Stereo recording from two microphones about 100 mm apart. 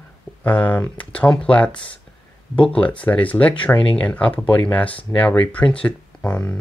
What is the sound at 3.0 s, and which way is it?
Speech, 15° left (ahead or behind).